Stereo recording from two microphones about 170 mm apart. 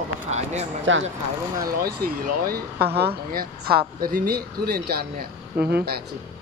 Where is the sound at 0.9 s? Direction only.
90° right.